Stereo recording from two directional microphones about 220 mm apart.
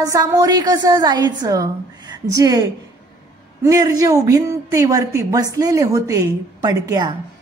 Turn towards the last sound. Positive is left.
turn(degrees=-15)  # may be behind; listen again after turning